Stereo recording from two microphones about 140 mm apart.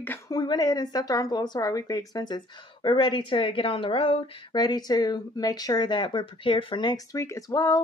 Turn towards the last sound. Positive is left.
turn(degrees=25)  # may be behind; listen again after turning